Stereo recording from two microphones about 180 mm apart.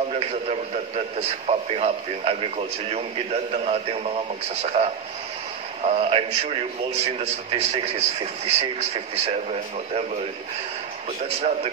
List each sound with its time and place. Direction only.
1.5 s a man's voice: 35° right (ahead or behind)
11.2 s a man's voice: 35° right (ahead or behind)